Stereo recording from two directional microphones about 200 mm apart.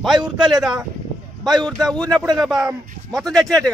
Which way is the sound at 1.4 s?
20° right (ahead or behind).